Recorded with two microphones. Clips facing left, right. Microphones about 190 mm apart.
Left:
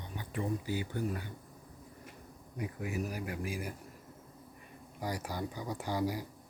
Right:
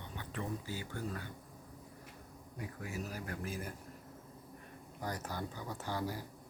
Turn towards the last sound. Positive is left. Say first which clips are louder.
# left 5 dB
turn(degrees=15)  # may be behind; listen again after turning